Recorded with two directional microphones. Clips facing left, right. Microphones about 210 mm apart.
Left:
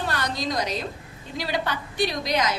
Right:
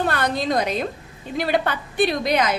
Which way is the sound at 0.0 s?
55° right (ahead or behind).